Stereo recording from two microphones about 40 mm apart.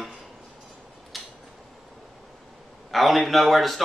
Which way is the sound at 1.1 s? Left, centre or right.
Centre.